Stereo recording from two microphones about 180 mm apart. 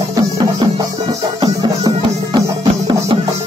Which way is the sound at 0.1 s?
20° right (ahead or behind).